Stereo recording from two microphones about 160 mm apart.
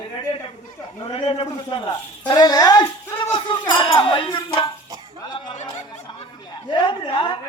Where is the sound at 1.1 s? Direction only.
35° left (ahead or behind).